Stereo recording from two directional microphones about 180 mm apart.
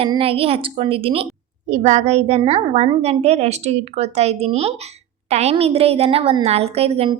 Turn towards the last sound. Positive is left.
turn(degrees=-35)  # may be behind; listen again after turning